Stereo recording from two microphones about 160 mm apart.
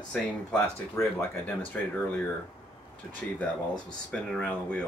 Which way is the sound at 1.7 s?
5° left (ahead or behind).